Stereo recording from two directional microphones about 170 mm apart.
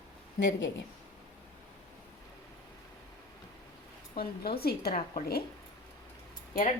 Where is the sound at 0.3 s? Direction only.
90° left.